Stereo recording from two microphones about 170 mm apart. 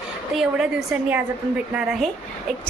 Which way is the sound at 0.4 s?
Centre (ahead or behind).